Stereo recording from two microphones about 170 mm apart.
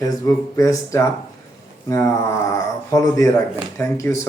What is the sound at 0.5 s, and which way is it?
Speech, 20° left (ahead or behind).